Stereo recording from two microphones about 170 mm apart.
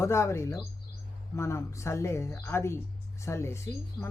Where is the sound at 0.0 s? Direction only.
15° left (ahead or behind).